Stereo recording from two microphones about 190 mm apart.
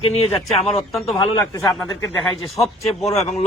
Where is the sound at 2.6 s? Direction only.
35° left (ahead or behind).